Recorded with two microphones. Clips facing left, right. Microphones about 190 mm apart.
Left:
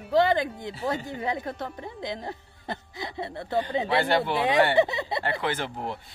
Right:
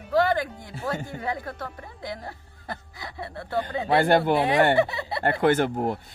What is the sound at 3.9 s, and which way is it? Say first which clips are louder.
Speech: right 8 dB; 45° right (ahead or behind).